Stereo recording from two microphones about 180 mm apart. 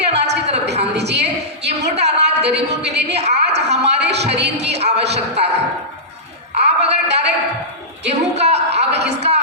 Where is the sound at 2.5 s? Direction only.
70° right (ahead or behind).